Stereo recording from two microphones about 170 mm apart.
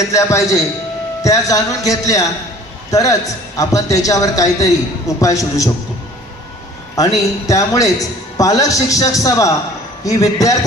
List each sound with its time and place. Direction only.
0.1 s a man's voice: 20° left (ahead or behind)
7.0 s a man's voice: 20° left (ahead or behind)